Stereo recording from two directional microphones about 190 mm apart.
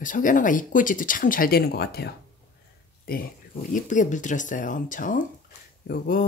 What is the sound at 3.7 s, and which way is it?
Speech, 40° left (ahead or behind).